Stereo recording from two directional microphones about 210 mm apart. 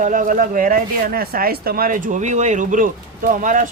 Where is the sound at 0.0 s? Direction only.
40° right (ahead or behind).